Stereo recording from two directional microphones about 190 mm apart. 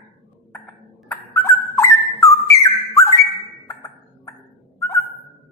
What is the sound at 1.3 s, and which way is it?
Dog, 15° left (ahead or behind).